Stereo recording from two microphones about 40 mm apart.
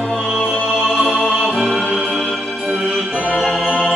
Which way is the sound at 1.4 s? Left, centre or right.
Centre.